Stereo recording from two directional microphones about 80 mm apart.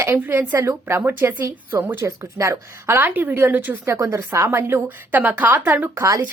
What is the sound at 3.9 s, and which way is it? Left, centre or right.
A woman's voice, right.